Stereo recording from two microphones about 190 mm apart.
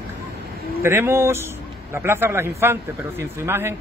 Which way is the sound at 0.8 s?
15° right (ahead or behind).